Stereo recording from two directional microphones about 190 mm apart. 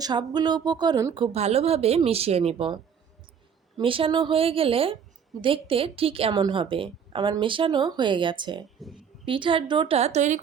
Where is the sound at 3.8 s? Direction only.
30° right (ahead or behind).